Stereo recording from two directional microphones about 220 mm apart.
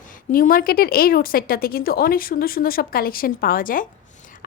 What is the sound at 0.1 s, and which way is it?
A woman's voice, 40° left (ahead or behind).